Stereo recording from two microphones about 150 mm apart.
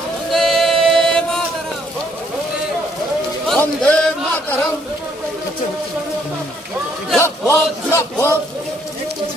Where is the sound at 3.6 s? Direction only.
5° left (ahead or behind).